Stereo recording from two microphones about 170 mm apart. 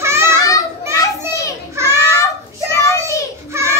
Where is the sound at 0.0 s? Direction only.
15° right (ahead or behind).